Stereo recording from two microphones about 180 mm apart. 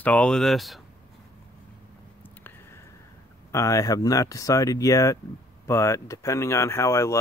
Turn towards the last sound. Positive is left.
turn(degrees=15)  # may be behind; listen again after turning